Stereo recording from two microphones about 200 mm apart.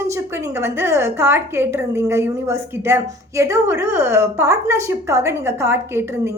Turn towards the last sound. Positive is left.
turn(degrees=-15)  # may be behind; listen again after turning